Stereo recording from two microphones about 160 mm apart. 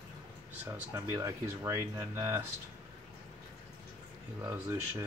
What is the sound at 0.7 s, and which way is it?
Speech, 15° right (ahead or behind).